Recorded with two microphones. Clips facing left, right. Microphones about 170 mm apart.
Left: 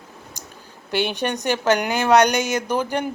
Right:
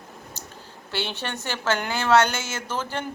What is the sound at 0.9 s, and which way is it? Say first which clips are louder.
Speech: left 8 dB; 15° left (ahead or behind).